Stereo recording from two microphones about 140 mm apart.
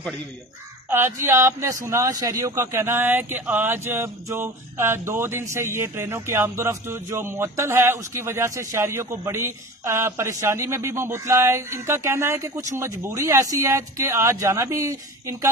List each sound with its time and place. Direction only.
0.8 s speech: 15° right (ahead or behind)